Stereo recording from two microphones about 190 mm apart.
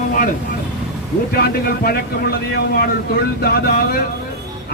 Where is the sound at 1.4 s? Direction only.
55° left (ahead or behind).